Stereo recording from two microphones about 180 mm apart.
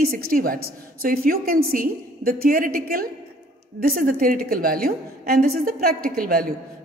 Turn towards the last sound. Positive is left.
turn(degrees=-55)  # may be behind; listen again after turning